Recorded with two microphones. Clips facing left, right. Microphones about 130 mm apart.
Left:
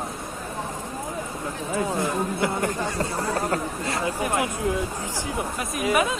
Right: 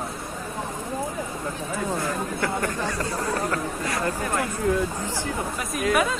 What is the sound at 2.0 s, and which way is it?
Speech, 20° left (ahead or behind).